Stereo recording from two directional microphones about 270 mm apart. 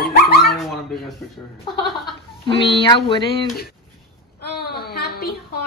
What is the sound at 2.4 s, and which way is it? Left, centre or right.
Speech, centre.